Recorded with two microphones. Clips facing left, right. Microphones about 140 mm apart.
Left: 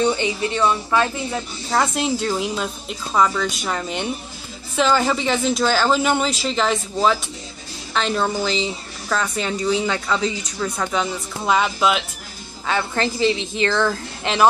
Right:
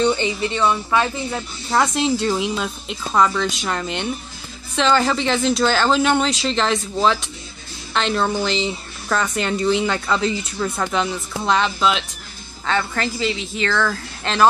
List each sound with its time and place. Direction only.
0.0 s a woman's voice: 10° left (ahead or behind)
1.7 s a woman's voice: 5° left (ahead or behind)
12.6 s a woman's voice: 20° left (ahead or behind)